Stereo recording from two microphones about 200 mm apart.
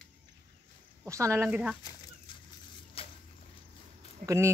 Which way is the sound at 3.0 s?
30° left (ahead or behind).